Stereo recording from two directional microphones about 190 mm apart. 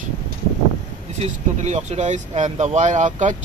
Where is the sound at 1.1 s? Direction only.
35° right (ahead or behind).